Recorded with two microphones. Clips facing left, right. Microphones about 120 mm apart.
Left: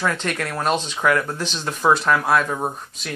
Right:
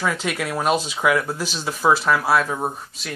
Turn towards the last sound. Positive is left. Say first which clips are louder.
# even
turn(degrees=0)  # may be behind; listen again after turning